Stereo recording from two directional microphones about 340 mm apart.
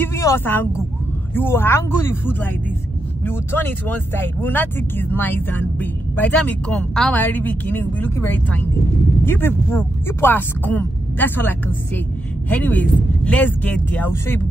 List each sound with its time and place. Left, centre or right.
0.0 s speech: centre